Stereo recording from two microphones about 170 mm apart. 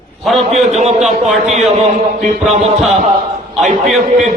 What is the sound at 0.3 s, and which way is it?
A man's voice, 40° right (ahead or behind).